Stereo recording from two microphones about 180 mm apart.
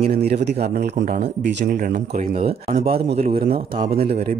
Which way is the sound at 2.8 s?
35° right (ahead or behind).